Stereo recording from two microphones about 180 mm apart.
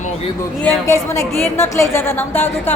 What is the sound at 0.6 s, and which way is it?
A woman's voice, 15° left (ahead or behind).